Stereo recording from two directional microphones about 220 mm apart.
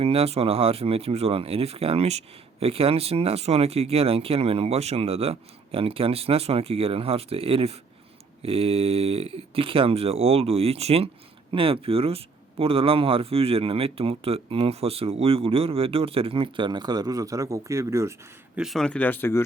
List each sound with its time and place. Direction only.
0.0 s speech: 25° right (ahead or behind)
18.5 s speech: centre (ahead or behind)